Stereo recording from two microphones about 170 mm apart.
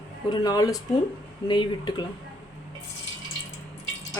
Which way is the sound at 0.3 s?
25° left (ahead or behind).